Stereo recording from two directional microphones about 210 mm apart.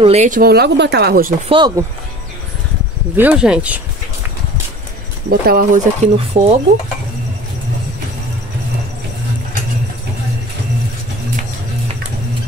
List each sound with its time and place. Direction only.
0.0 s speech: 30° right (ahead or behind); by 1.3 s 45° right (ahead or behind)
1.5 s speech: 20° right (ahead or behind)
3.2 s speech: 5° right (ahead or behind)
5.3 s speech: 45° right (ahead or behind)